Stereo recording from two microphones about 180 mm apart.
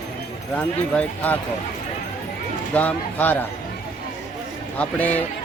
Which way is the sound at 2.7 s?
10° left (ahead or behind).